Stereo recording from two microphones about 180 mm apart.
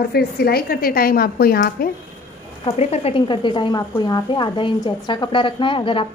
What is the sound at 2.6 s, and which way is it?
A woman's voice, 35° left (ahead or behind).